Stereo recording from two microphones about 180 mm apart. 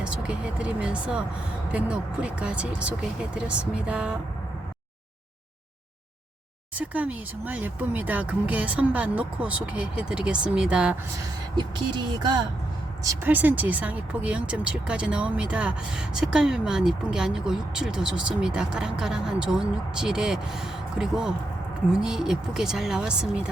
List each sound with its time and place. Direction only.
0.0 s speech: 5° right (ahead or behind)
6.7 s speech: 10° right (ahead or behind)
11.5 s speech: 25° right (ahead or behind); by 23.5 s 5° right (ahead or behind)